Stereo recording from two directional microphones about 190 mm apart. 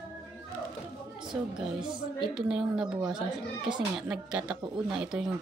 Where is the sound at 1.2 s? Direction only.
5° right (ahead or behind).